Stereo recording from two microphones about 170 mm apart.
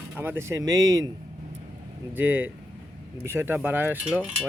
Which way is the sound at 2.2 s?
10° right (ahead or behind).